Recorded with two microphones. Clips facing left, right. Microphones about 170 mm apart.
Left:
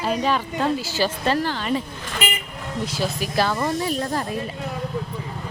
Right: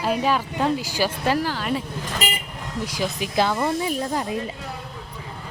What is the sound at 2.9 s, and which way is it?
A woman's voice, 15° right (ahead or behind).